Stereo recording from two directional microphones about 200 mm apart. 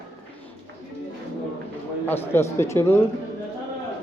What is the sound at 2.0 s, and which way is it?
Speech, 10° left (ahead or behind).